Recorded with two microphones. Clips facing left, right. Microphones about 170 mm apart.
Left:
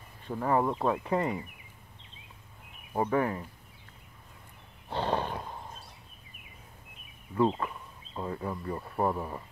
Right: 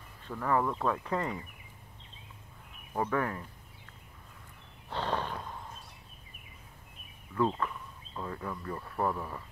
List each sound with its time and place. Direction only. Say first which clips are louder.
0.3 s speech: left 3 dB; 25° left (ahead or behind)
3.0 s speech: left 3 dB; 20° left (ahead or behind)
4.8 s wild animals: left 3 dB; 15° left (ahead or behind)
7.3 s speech: left 3 dB; 20° left (ahead or behind)